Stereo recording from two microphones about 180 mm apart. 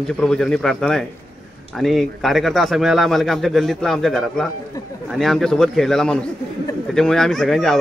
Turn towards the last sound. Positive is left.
turn(degrees=0)  # may be behind; listen again after turning